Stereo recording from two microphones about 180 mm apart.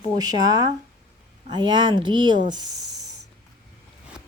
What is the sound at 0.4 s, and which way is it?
Speech, 20° right (ahead or behind).